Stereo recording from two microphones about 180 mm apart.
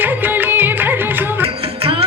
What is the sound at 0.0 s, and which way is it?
Music, 10° right (ahead or behind).